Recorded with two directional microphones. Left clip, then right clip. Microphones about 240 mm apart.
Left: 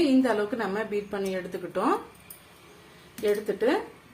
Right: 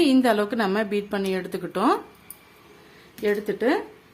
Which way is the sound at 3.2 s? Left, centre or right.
Right.